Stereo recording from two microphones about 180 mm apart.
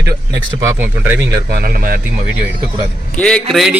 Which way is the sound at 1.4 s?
55° right (ahead or behind).